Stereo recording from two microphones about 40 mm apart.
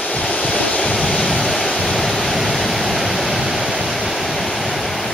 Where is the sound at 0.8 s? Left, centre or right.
Centre.